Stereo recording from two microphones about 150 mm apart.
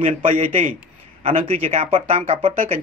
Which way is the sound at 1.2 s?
40° right (ahead or behind).